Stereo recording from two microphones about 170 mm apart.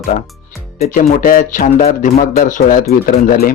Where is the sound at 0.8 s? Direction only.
55° left (ahead or behind).